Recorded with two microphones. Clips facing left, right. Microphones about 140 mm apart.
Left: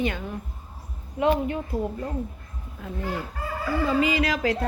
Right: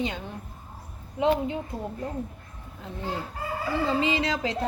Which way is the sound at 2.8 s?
25° right (ahead or behind).